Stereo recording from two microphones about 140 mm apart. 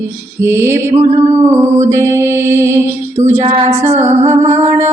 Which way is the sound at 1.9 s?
20° right (ahead or behind).